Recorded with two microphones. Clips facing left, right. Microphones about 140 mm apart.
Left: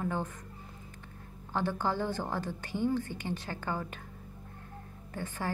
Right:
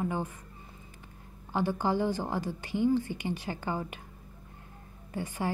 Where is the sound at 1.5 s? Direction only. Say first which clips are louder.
Right 3 dB; 10° right (ahead or behind).